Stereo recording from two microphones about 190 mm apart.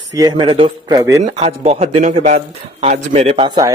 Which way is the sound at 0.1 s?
20° right (ahead or behind).